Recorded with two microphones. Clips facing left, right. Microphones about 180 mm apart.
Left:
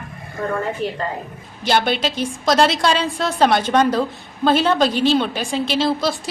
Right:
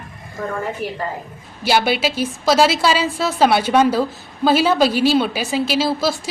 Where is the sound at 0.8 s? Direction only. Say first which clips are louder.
Left 2 dB; 25° left (ahead or behind).